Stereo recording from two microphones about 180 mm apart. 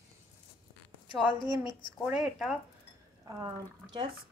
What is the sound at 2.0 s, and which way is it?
Speech, 5° right (ahead or behind).